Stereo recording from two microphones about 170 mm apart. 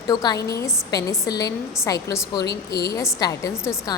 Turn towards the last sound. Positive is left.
turn(degrees=20)  # may be behind; listen again after turning